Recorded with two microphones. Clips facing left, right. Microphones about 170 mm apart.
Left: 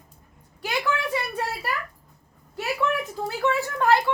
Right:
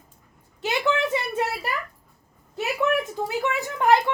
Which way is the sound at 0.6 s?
25° right (ahead or behind).